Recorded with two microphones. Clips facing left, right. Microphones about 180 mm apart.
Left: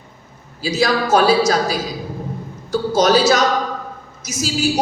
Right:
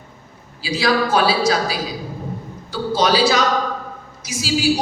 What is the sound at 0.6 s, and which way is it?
A woman's voice, 45° left (ahead or behind).